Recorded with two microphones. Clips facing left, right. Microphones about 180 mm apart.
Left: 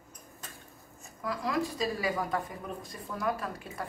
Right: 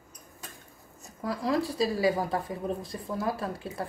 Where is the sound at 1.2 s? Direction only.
30° right (ahead or behind).